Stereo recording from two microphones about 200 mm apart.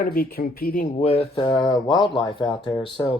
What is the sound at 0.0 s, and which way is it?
Speech, 45° left (ahead or behind).